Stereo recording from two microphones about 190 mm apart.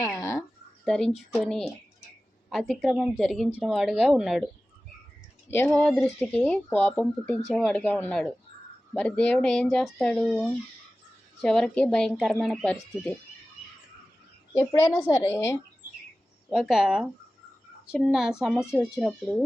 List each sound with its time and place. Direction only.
0.0 s a sound: 15° left (ahead or behind)
0.9 s speech: centre (ahead or behind)
5.5 s speech: 5° left (ahead or behind)
14.5 s speech: 15° left (ahead or behind)
16.5 s speech: centre (ahead or behind)